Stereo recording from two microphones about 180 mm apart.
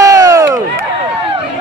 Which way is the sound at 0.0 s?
20° right (ahead or behind).